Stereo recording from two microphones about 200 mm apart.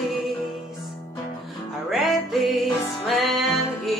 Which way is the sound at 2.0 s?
Centre (ahead or behind).